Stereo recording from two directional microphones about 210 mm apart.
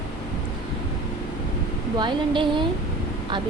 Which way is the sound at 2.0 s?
25° right (ahead or behind).